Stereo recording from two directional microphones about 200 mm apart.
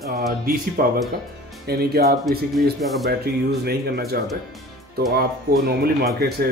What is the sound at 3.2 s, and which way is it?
Speech, 50° right (ahead or behind).